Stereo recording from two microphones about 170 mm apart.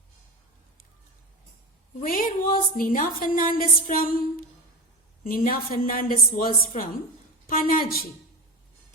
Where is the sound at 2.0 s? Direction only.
55° left (ahead or behind).